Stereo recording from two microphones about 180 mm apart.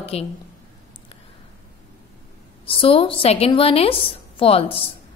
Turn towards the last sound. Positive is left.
turn(degrees=30)  # may be behind; listen again after turning